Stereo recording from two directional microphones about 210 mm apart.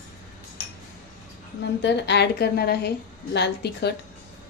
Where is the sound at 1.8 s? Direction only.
55° left (ahead or behind).